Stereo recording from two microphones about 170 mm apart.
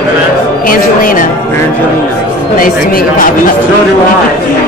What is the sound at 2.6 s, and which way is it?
Speech, 55° left (ahead or behind).